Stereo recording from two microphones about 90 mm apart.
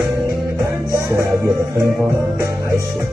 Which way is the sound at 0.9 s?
35° right (ahead or behind).